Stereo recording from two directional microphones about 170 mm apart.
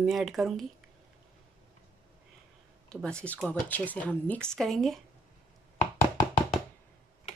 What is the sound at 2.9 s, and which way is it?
A woman's voice, 5° left (ahead or behind).